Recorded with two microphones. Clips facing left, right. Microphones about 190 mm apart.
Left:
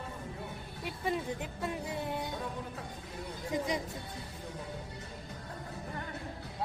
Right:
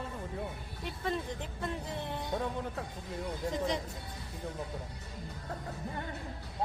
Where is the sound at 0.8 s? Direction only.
10° left (ahead or behind).